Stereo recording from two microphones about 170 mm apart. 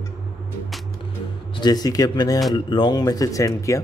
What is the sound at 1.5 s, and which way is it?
Speech, 25° left (ahead or behind).